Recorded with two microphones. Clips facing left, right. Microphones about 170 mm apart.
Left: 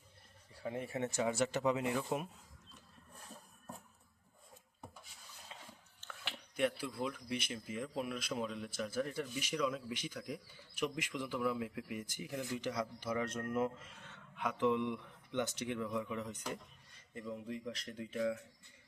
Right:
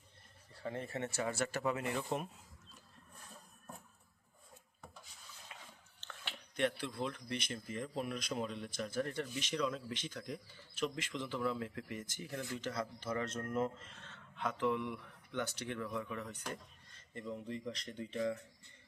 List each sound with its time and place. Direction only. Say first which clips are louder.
0.5 s speech: left 1 dB; 10° left (ahead or behind)
2.0 s speech: left 1 dB; centre (ahead or behind)
6.0 s speech: left 1 dB; 5° left (ahead or behind)
16.5 s speech: left 2 dB; 5° left (ahead or behind)